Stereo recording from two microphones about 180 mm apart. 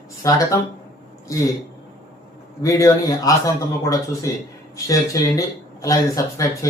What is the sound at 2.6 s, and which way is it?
Speech, 20° left (ahead or behind).